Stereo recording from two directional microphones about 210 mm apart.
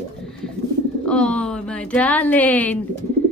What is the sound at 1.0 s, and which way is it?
Speech, 5° left (ahead or behind).